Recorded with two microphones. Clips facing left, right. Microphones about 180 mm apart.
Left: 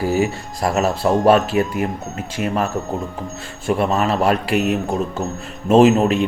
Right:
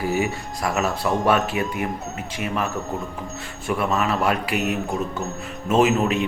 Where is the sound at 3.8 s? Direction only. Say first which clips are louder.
Left 3 dB; 35° left (ahead or behind).